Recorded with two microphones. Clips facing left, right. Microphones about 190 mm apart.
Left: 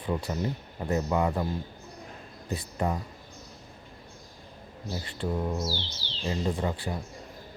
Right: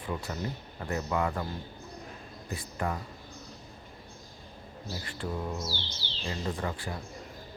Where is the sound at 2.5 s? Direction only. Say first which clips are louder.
Left 4 dB; 25° left (ahead or behind).